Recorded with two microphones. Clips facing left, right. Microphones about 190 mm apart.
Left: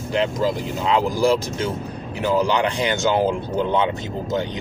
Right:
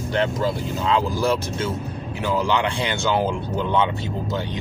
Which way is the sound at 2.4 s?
40° left (ahead or behind).